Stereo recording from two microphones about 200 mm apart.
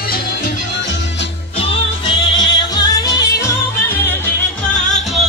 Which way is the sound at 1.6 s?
25° left (ahead or behind).